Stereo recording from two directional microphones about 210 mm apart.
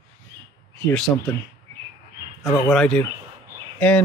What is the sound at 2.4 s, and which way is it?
Speech, 15° left (ahead or behind).